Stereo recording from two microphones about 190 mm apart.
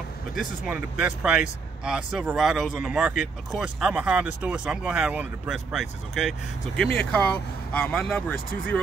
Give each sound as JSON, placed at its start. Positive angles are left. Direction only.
{"t": 0.4, "sound": "speech", "side_deg": -5}